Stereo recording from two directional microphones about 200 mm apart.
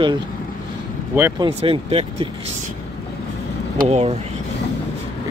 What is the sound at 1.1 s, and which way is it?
Speech, 10° right (ahead or behind).